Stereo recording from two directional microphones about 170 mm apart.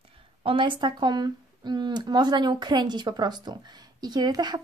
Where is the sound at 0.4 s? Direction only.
30° right (ahead or behind).